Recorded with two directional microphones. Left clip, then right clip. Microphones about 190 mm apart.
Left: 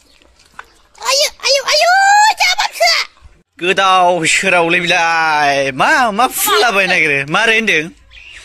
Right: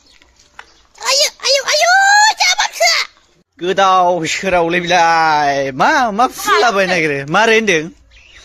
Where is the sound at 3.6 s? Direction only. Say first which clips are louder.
Left 1 dB; 10° right (ahead or behind).